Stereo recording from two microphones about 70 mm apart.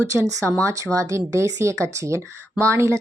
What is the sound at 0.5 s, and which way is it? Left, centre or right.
Speech, right.